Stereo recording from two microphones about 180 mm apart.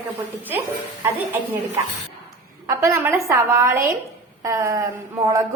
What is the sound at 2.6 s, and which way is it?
A woman's voice, 15° right (ahead or behind).